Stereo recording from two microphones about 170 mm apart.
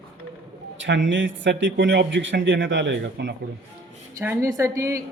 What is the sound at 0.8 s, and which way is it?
A man's voice, 90° right.